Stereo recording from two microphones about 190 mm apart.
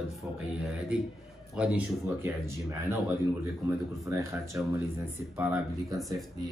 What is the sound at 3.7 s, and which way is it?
Speech, 15° right (ahead or behind).